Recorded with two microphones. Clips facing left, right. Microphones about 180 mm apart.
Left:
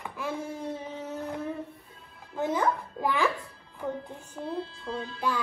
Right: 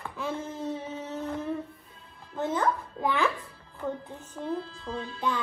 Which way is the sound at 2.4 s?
15° left (ahead or behind).